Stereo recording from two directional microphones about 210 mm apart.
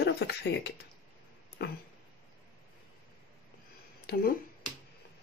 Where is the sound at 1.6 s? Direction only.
50° left (ahead or behind).